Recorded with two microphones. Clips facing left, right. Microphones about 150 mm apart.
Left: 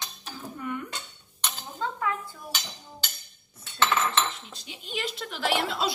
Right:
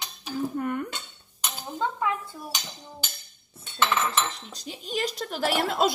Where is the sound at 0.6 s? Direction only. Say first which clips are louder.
Right 2 dB; 50° right (ahead or behind).